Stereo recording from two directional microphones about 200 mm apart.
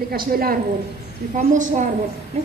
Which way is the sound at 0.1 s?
50° right (ahead or behind).